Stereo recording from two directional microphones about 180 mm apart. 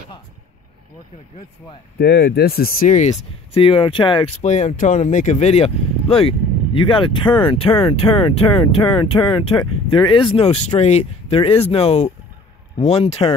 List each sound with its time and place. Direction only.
2.0 s speech: 65° left (ahead or behind); by 4.3 s 30° left (ahead or behind)
4.4 s speech: 40° left (ahead or behind)